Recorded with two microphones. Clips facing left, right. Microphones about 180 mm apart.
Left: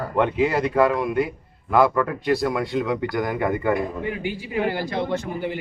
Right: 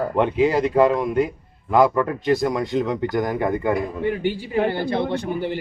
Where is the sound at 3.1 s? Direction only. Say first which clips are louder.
Right 2 dB; 40° right (ahead or behind).